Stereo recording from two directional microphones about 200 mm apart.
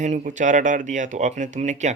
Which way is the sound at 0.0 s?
35° right (ahead or behind).